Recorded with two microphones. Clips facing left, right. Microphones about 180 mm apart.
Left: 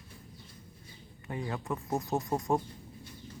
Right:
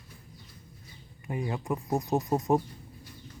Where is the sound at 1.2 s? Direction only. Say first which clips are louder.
Right 3 dB; 15° right (ahead or behind).